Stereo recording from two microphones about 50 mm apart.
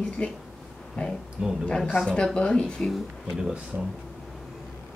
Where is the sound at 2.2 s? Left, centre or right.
Centre.